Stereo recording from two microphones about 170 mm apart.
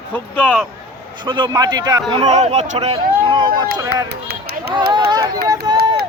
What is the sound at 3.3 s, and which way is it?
Speech, 25° right (ahead or behind).